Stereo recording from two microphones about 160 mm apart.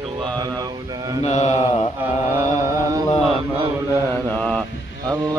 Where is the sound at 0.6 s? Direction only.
25° right (ahead or behind).